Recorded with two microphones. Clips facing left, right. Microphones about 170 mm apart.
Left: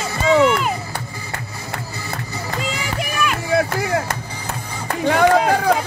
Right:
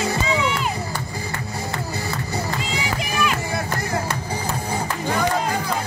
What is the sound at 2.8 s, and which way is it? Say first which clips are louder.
Run: right 1 dB; 55° left (ahead or behind).